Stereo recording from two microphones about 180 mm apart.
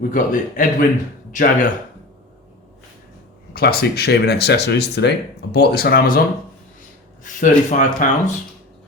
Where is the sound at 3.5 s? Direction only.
60° left (ahead or behind).